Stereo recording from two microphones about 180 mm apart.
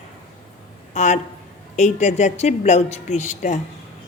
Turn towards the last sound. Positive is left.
turn(degrees=40)  # may be behind; listen again after turning